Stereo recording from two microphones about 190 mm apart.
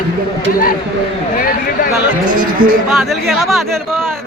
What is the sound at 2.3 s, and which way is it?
Speech, 45° right (ahead or behind).